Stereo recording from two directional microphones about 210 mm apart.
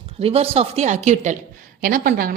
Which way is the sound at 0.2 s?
30° right (ahead or behind).